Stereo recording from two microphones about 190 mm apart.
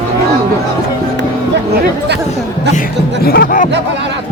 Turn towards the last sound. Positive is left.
turn(degrees=50)  # may be behind; listen again after turning